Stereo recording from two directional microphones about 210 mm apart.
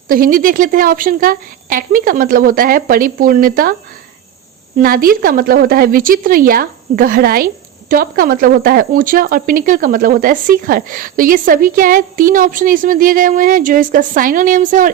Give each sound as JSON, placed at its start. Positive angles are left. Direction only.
{"t": 0.1, "sound": "speech", "side_deg": -40}
{"t": 4.8, "sound": "speech", "side_deg": -45}